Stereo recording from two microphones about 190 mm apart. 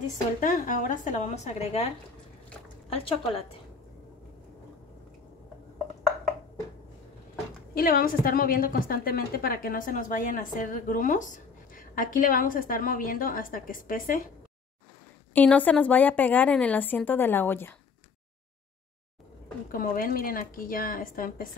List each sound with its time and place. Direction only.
0.4 s speech: 45° left (ahead or behind)
7.7 s a woman's voice: 50° left (ahead or behind)
15.3 s a woman's voice: 10° left (ahead or behind)
19.7 s a woman's voice: 45° left (ahead or behind)